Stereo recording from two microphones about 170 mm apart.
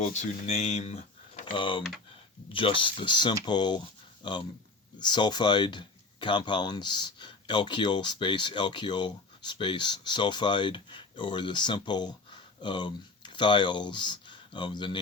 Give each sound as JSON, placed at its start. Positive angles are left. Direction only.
{"t": 0.0, "sound": "speech", "side_deg": 40}
{"t": 1.5, "sound": "speech", "side_deg": 30}